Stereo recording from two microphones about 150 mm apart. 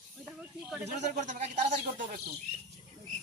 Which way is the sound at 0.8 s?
55° right (ahead or behind).